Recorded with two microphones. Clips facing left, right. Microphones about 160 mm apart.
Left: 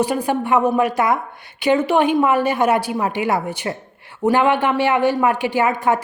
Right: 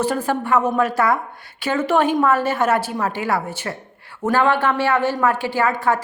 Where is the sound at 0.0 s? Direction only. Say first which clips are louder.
Left 2 dB; 15° left (ahead or behind).